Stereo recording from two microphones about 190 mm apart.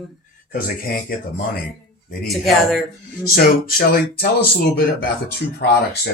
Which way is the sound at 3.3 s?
50° left (ahead or behind).